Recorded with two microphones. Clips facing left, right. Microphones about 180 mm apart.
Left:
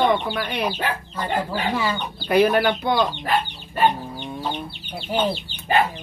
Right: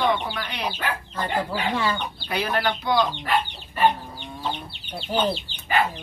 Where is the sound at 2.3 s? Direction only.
55° left (ahead or behind).